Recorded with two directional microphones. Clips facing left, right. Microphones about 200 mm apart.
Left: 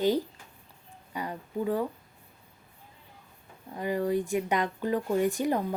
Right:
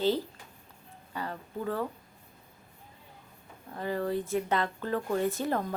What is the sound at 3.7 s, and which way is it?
Speech, 15° left (ahead or behind).